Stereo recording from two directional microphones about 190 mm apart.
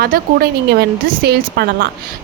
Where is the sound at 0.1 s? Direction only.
50° right (ahead or behind).